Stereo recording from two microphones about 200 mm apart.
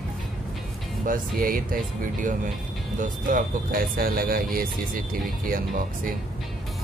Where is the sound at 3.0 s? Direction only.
45° right (ahead or behind).